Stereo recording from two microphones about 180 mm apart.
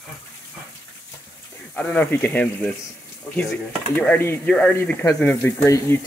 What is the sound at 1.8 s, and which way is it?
Speech, 10° left (ahead or behind).